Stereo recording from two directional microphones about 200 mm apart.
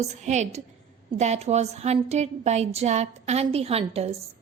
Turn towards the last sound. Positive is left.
turn(degrees=-30)  # may be behind; listen again after turning